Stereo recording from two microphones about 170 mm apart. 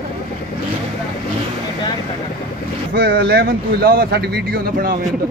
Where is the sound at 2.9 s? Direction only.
65° right (ahead or behind).